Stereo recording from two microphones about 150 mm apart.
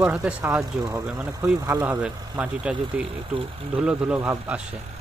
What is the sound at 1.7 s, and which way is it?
Speech, 20° right (ahead or behind).